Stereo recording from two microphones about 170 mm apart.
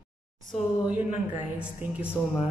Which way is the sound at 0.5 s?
5° right (ahead or behind).